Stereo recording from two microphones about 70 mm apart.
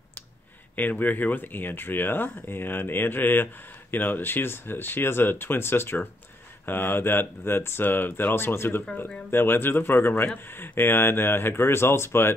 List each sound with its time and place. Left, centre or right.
0.7 s speech: left